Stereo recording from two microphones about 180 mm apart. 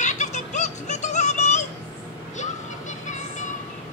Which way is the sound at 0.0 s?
40° left (ahead or behind).